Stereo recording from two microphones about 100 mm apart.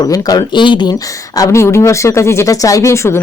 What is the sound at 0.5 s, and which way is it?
Speech, 50° left (ahead or behind).